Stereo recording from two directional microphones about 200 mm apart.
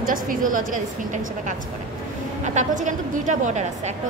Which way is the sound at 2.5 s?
40° right (ahead or behind).